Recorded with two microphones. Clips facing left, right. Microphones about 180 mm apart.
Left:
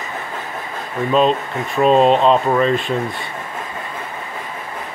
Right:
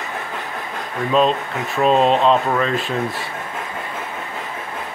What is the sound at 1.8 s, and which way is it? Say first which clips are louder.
Speech: left 3 dB; centre (ahead or behind).